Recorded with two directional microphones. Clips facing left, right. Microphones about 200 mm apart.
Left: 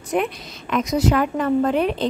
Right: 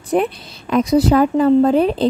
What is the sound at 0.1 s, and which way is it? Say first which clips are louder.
Speech: right 5 dB; 35° right (ahead or behind).